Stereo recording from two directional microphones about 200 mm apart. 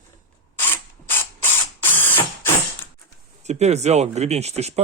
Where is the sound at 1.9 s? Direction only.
10° left (ahead or behind).